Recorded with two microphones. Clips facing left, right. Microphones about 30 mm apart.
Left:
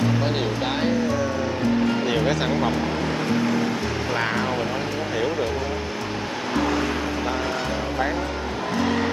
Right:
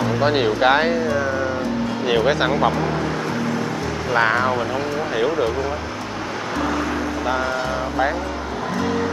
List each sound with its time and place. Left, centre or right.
0.2 s speech: right
2.0 s speech: centre
4.1 s speech: centre